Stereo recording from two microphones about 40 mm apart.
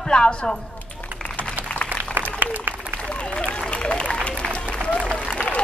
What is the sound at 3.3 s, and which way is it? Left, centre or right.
Applause, left.